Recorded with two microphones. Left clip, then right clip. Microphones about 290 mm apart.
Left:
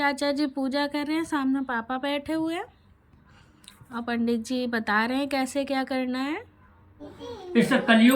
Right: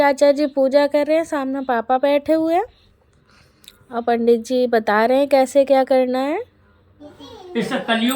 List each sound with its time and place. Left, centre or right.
0.0 s a woman's voice: centre
3.7 s a woman's voice: centre
7.5 s a woman's voice: centre